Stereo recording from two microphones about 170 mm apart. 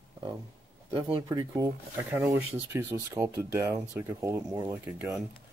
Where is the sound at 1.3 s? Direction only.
25° right (ahead or behind).